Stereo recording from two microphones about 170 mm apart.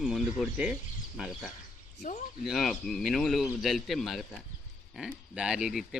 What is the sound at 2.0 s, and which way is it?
Speech, 50° left (ahead or behind).